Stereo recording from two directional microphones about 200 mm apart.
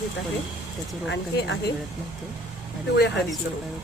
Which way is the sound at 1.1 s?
60° left (ahead or behind).